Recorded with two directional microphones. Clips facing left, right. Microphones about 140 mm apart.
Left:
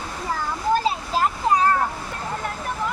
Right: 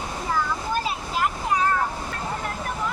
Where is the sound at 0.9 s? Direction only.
30° left (ahead or behind).